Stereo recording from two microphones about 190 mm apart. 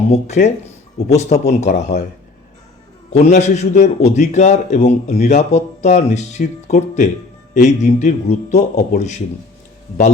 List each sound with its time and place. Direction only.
0.1 s a man's voice: 35° left (ahead or behind)
3.1 s a man's voice: 35° left (ahead or behind)